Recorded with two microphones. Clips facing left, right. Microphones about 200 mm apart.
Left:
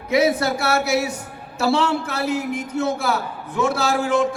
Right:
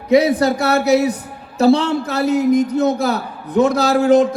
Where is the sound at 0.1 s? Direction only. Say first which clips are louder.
Right 5 dB; 35° right (ahead or behind).